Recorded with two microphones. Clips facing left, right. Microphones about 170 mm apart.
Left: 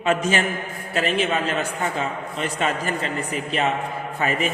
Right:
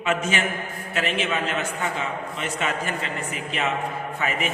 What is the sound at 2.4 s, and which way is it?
Speech, 35° left (ahead or behind).